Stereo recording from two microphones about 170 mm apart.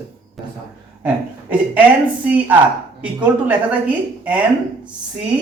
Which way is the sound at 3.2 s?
10° right (ahead or behind).